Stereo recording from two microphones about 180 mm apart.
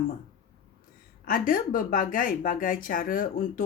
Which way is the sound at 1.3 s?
50° left (ahead or behind).